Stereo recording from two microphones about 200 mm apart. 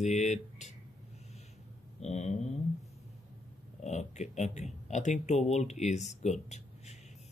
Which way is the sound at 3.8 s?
35° left (ahead or behind).